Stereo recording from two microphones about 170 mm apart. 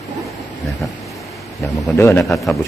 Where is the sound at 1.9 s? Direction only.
15° left (ahead or behind).